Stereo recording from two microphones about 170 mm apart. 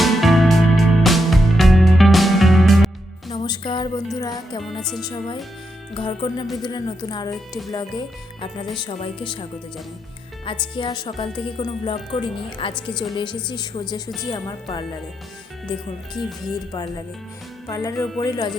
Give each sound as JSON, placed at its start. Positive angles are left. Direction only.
{"t": 0.0, "sound": "music", "side_deg": 0}
{"t": 3.2, "sound": "music", "side_deg": 25}
{"t": 4.6, "sound": "music", "side_deg": 0}
{"t": 5.0, "sound": "speech", "side_deg": 25}
{"t": 16.1, "sound": "music", "side_deg": 0}
{"t": 17.7, "sound": "speech", "side_deg": 20}